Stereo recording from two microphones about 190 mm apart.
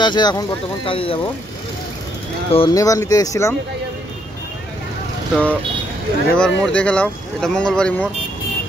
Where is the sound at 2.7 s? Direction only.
15° left (ahead or behind).